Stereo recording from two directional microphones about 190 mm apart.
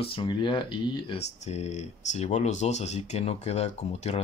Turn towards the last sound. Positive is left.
turn(degrees=35)  # may be behind; listen again after turning